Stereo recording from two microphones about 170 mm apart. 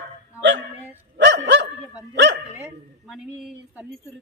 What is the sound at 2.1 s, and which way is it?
Dog, 90° right.